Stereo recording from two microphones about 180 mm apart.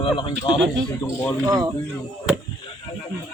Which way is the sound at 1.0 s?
15° left (ahead or behind).